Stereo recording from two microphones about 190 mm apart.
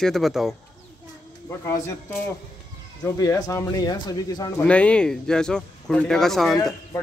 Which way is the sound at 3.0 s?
15° left (ahead or behind).